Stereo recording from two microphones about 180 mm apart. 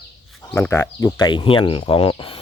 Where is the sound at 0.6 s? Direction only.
15° left (ahead or behind); by 2.3 s 30° left (ahead or behind).